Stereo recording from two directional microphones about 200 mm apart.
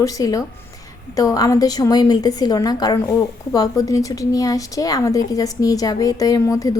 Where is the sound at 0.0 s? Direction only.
15° left (ahead or behind).